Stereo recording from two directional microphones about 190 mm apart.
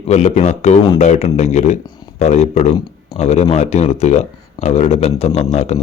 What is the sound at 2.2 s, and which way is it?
Speech, 35° left (ahead or behind).